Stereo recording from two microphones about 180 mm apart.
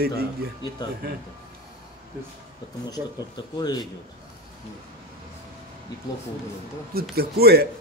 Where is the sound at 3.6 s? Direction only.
20° left (ahead or behind).